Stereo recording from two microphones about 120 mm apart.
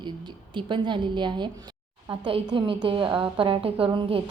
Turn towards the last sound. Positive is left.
turn(degrees=-45)  # may be behind; listen again after turning